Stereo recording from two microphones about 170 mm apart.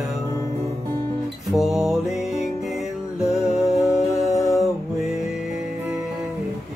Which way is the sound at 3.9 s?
Centre (ahead or behind).